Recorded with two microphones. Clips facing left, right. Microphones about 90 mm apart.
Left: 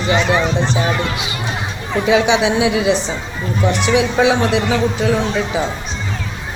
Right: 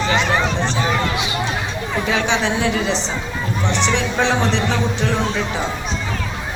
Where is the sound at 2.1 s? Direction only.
15° left (ahead or behind).